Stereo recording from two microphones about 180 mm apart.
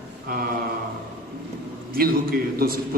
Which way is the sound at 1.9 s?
55° right (ahead or behind).